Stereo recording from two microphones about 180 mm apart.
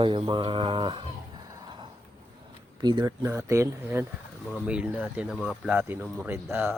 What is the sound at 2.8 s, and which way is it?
Speech, 25° right (ahead or behind).